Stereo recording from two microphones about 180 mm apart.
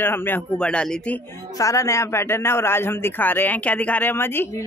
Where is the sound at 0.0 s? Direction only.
10° left (ahead or behind).